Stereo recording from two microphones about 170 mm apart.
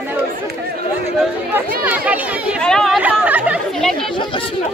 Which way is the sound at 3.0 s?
10° right (ahead or behind).